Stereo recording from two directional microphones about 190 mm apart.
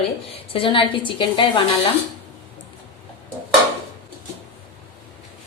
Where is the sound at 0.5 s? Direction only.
25° left (ahead or behind).